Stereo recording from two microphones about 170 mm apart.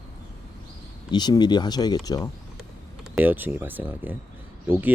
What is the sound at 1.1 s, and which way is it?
Speech, 25° left (ahead or behind).